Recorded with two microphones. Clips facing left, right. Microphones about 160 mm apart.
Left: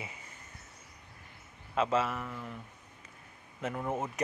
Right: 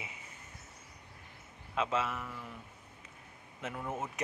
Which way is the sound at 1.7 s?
Centre (ahead or behind).